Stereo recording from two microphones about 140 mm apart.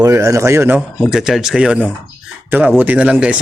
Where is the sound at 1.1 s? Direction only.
5° right (ahead or behind).